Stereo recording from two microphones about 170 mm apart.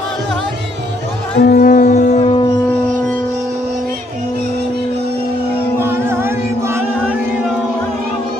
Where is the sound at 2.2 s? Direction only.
35° left (ahead or behind).